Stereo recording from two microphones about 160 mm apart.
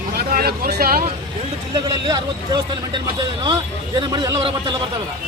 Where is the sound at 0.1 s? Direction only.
70° right (ahead or behind).